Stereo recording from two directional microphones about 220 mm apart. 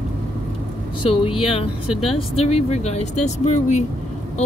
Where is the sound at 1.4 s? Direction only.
25° left (ahead or behind).